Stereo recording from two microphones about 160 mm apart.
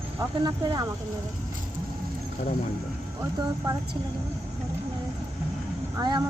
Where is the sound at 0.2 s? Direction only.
25° right (ahead or behind).